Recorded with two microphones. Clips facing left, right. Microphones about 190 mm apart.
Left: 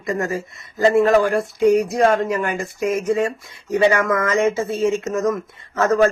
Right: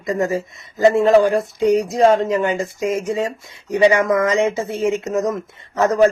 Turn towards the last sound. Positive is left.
turn(degrees=-15)  # may be behind; listen again after turning